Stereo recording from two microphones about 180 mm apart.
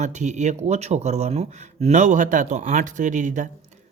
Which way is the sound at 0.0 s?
40° right (ahead or behind).